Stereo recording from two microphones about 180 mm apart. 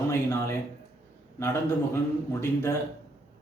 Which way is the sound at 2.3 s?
15° left (ahead or behind).